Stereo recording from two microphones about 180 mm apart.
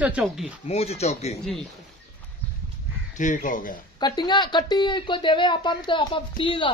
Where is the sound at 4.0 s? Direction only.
25° left (ahead or behind).